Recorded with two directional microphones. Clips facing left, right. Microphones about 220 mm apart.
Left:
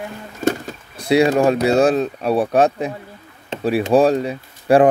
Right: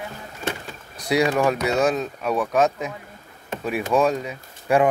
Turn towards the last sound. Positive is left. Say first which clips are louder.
# left 6 dB
turn(degrees=35)  # may be behind; listen again after turning